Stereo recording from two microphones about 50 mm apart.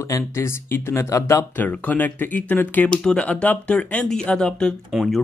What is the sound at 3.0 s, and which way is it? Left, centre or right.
Speech, left.